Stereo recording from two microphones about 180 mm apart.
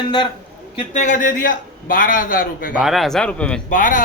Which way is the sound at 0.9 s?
45° left (ahead or behind).